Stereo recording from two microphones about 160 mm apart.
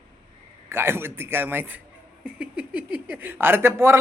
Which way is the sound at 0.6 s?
15° right (ahead or behind).